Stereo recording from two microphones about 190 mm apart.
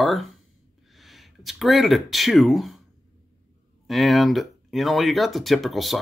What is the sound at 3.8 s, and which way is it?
Speech, centre (ahead or behind).